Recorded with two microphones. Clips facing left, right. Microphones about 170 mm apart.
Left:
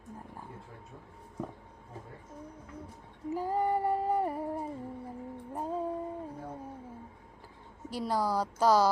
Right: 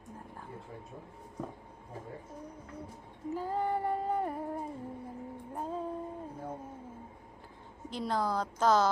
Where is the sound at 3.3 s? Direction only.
10° left (ahead or behind).